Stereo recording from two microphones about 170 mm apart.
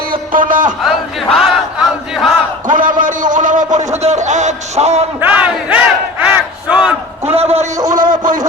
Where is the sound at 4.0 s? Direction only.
40° right (ahead or behind).